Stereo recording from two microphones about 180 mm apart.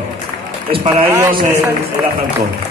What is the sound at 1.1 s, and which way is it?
Speech, 20° right (ahead or behind).